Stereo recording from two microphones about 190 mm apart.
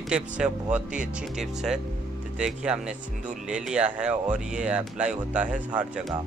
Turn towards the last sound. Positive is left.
turn(degrees=-5)  # may be behind; listen again after turning